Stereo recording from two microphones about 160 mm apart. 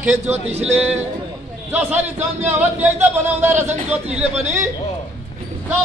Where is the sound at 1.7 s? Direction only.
10° right (ahead or behind).